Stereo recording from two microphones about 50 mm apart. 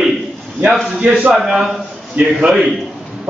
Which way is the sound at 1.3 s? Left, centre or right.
Centre.